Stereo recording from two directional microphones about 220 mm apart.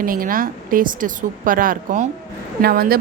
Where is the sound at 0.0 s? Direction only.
40° right (ahead or behind).